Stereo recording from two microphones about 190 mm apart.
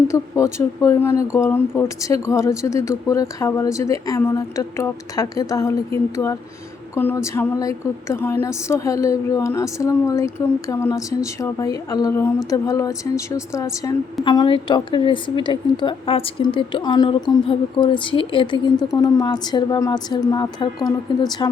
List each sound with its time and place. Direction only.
0.1 s a woman's voice: 15° left (ahead or behind)